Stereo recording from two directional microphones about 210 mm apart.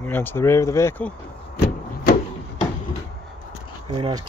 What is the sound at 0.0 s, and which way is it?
Speech, 10° left (ahead or behind).